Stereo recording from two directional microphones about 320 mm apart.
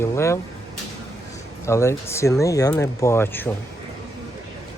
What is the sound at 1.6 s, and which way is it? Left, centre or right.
Speech, centre.